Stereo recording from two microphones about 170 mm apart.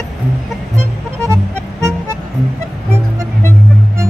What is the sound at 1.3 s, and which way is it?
Music, 15° right (ahead or behind).